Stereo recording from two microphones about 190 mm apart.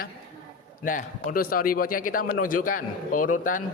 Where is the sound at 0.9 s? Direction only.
45° left (ahead or behind).